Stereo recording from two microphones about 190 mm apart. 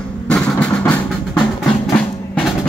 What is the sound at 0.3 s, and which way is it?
Drum, 5° left (ahead or behind).